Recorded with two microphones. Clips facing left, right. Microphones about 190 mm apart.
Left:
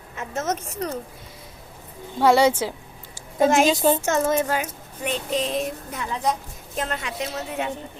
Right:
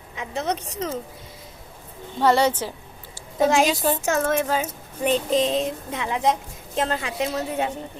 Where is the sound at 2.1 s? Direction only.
10° left (ahead or behind).